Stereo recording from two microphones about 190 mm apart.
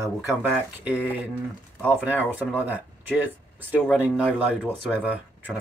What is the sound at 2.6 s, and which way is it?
Speech, 10° right (ahead or behind).